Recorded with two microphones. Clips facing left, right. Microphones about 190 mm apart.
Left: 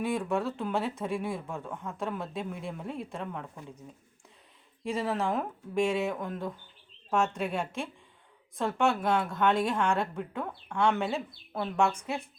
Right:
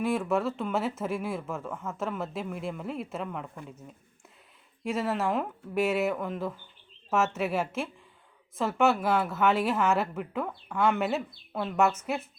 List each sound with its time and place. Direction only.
0.0 s speech: centre (ahead or behind)